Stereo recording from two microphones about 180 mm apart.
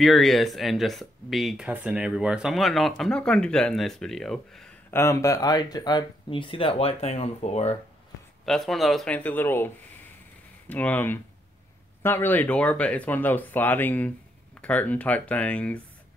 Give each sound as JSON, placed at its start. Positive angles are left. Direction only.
{"t": 0.0, "sound": "speech", "side_deg": 0}
{"t": 4.9, "sound": "speech", "side_deg": 15}
{"t": 8.5, "sound": "speech", "side_deg": 0}
{"t": 10.7, "sound": "speech", "side_deg": 10}